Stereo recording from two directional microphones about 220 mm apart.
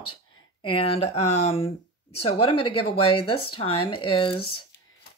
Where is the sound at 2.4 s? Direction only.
90° left.